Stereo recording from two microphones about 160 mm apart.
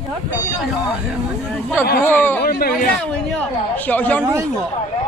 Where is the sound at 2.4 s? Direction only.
70° left (ahead or behind).